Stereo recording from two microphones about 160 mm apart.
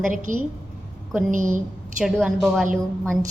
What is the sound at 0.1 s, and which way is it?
Speech, 50° right (ahead or behind).